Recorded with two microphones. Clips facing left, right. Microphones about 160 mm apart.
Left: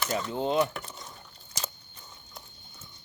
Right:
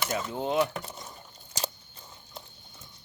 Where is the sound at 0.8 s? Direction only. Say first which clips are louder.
Right 2 dB; 25° right (ahead or behind).